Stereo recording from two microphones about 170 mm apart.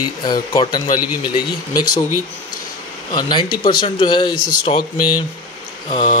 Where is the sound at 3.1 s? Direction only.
25° left (ahead or behind).